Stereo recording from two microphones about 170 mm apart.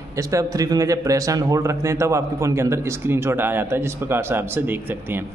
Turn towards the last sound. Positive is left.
turn(degrees=-10)  # may be behind; listen again after turning